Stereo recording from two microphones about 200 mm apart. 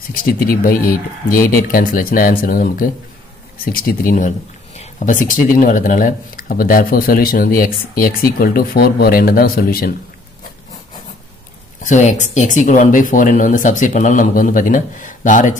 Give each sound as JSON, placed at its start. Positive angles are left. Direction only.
{"t": 0.1, "sound": "speech", "side_deg": 45}
{"t": 11.8, "sound": "speech", "side_deg": 35}